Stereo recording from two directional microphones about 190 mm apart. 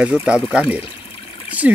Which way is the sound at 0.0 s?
5° right (ahead or behind).